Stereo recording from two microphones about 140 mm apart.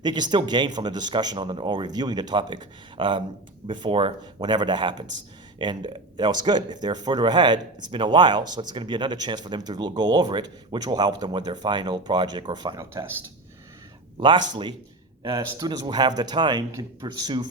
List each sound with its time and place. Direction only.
0.0 s speech: 30° right (ahead or behind)
14.2 s speech: 35° right (ahead or behind)